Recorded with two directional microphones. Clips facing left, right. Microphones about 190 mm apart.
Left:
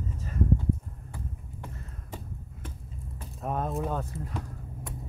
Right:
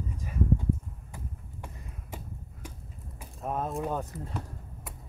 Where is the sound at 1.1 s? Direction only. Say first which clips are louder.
Left 3 dB; 10° right (ahead or behind).